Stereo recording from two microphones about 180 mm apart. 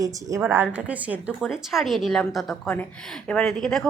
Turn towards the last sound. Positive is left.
turn(degrees=5)  # may be behind; listen again after turning